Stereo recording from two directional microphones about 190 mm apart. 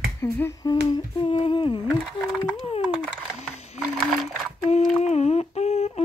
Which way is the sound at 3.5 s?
Centre (ahead or behind).